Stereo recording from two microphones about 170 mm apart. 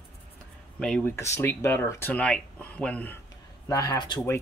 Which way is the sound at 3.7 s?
20° left (ahead or behind).